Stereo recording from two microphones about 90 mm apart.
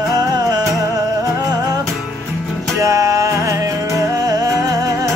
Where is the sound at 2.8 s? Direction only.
35° right (ahead or behind).